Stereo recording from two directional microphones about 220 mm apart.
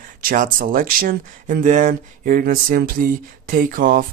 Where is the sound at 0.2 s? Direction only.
40° right (ahead or behind).